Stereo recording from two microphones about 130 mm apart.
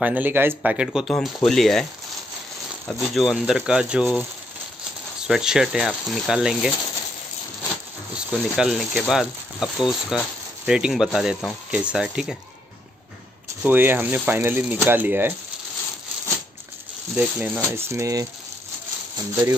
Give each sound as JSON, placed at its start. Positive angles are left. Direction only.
{"t": 0.0, "sound": "speech", "side_deg": -10}
{"t": 0.6, "sound": "speech", "side_deg": -5}
{"t": 2.9, "sound": "speech", "side_deg": 0}
{"t": 5.2, "sound": "speech", "side_deg": -5}
{"t": 8.1, "sound": "speech", "side_deg": -5}
{"t": 13.6, "sound": "speech", "side_deg": -15}
{"t": 17.1, "sound": "speech", "side_deg": -10}